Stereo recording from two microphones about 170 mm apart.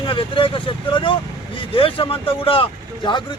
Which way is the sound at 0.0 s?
30° left (ahead or behind).